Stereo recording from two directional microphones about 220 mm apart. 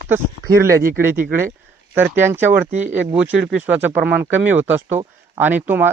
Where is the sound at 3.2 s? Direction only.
5° right (ahead or behind).